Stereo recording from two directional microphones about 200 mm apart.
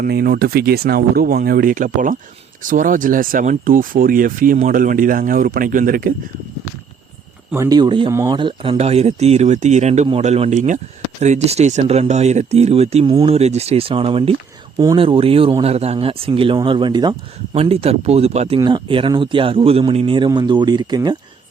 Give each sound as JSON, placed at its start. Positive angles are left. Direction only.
{"t": 0.0, "sound": "speech", "side_deg": -50}
{"t": 7.5, "sound": "speech", "side_deg": -15}